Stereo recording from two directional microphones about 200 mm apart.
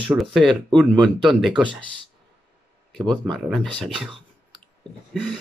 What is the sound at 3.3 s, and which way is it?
Speech, centre (ahead or behind).